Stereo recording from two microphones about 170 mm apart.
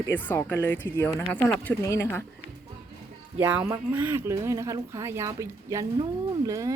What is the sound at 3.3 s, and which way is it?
Speech, 10° right (ahead or behind).